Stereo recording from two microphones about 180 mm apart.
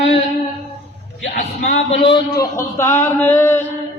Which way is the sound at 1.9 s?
30° left (ahead or behind).